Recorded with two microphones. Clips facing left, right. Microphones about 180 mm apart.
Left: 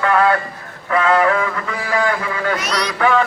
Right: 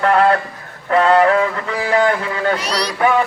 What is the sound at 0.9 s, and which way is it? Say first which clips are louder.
A man's voice: right 3 dB; 35° right (ahead or behind).